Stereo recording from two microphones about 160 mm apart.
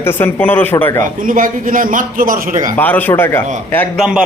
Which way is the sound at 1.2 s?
55° right (ahead or behind).